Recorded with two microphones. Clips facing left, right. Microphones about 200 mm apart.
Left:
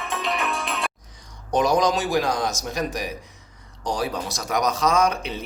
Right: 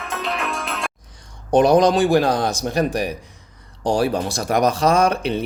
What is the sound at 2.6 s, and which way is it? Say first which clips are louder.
Speech: right 7 dB; 60° right (ahead or behind).